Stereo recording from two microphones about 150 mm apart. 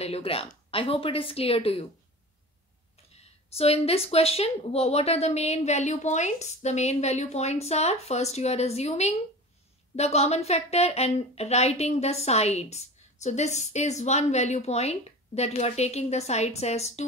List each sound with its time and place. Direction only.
0.0 s speech: 40° left (ahead or behind)
3.5 s a woman's voice: 40° left (ahead or behind)